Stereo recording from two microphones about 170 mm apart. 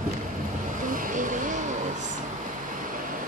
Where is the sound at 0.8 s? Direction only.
50° right (ahead or behind).